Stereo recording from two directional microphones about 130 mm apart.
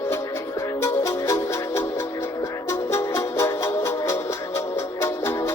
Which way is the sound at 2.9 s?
25° left (ahead or behind).